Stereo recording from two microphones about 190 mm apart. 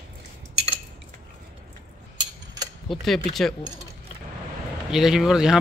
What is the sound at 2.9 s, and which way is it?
Speech, centre (ahead or behind).